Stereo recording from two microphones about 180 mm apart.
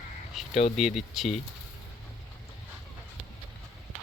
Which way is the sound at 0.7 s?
Centre (ahead or behind).